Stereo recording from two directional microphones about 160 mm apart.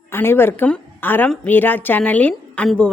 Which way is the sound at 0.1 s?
15° left (ahead or behind).